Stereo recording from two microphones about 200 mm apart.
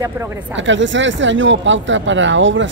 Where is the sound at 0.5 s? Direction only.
65° right (ahead or behind).